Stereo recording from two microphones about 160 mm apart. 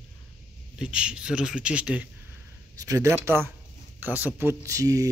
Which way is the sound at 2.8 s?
20° right (ahead or behind).